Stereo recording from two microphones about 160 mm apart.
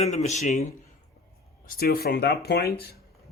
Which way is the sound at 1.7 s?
70° left (ahead or behind).